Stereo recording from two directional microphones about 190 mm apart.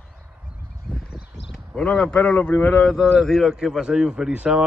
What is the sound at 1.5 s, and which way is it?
Speech, 5° left (ahead or behind).